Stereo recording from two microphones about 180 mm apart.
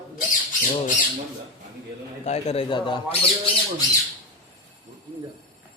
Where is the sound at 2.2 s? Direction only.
35° left (ahead or behind).